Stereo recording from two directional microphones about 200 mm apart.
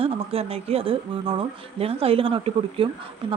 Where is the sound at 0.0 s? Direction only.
30° right (ahead or behind).